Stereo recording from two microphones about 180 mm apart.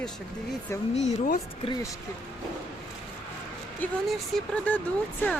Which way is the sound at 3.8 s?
Centre (ahead or behind).